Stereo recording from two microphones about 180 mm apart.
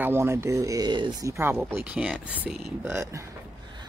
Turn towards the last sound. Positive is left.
turn(degrees=-15)  # may be behind; listen again after turning